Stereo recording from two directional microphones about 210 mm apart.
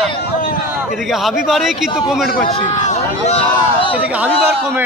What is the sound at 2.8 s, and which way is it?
Speech, 30° left (ahead or behind).